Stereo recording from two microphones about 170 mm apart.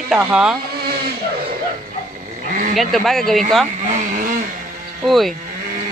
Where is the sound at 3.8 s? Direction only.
50° right (ahead or behind).